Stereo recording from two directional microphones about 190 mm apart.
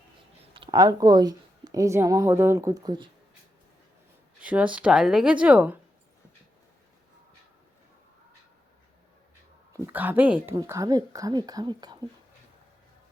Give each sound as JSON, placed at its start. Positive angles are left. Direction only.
{"t": 0.5, "sound": "a woman's voice", "side_deg": -25}
{"t": 4.4, "sound": "speech", "side_deg": -5}
{"t": 9.7, "sound": "speech", "side_deg": -10}